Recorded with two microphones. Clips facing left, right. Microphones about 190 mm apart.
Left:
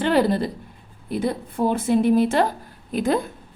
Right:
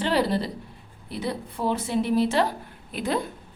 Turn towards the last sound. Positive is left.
turn(degrees=45)  # may be behind; listen again after turning